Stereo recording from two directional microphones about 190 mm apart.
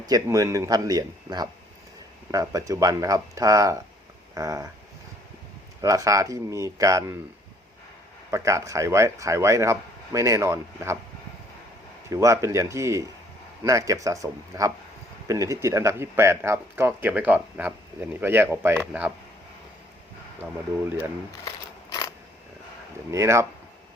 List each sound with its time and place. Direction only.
0.0 s speech: 20° right (ahead or behind)
5.8 s speech: 15° right (ahead or behind)
8.3 s speech: 15° right (ahead or behind)
12.1 s speech: 15° right (ahead or behind)
20.4 s speech: 15° right (ahead or behind)
21.4 s a sound: 15° left (ahead or behind)
23.1 s speech: 15° right (ahead or behind)